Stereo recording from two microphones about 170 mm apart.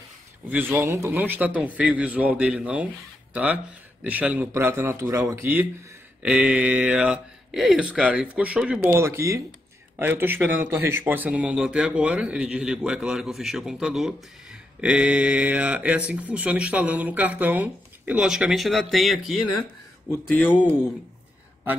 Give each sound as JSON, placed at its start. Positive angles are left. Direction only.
{"t": 0.5, "sound": "speech", "side_deg": -10}
{"t": 9.0, "sound": "speech", "side_deg": -15}